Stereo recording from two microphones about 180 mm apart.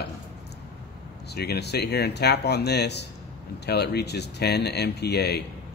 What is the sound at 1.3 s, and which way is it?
Speech, 65° left (ahead or behind).